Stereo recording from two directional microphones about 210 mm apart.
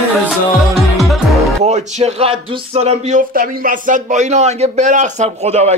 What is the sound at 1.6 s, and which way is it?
Speech, 30° right (ahead or behind).